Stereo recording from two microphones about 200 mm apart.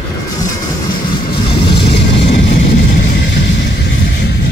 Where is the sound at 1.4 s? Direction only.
25° left (ahead or behind).